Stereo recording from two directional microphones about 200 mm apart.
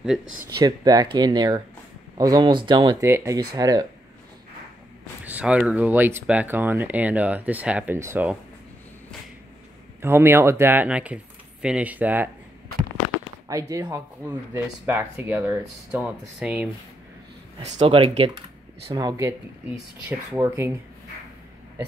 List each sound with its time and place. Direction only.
0.6 s speech: 20° right (ahead or behind)
5.2 s speech: 5° right (ahead or behind)
10.0 s speech: 10° right (ahead or behind)
13.5 s speech: 15° right (ahead or behind)
17.6 s speech: 30° right (ahead or behind); by 20.7 s 15° right (ahead or behind)